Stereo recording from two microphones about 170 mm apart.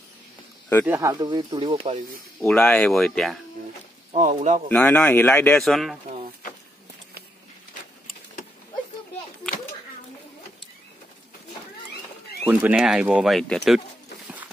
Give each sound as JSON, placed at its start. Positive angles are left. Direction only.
{"t": 0.8, "sound": "speech", "side_deg": -15}
{"t": 2.4, "sound": "speech", "side_deg": 5}
{"t": 4.1, "sound": "speech", "side_deg": -45}
{"t": 4.6, "sound": "speech", "side_deg": 10}
{"t": 12.4, "sound": "speech", "side_deg": -10}